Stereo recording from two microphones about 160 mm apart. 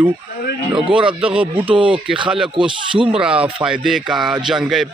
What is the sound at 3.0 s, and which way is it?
A man's voice, 5° right (ahead or behind).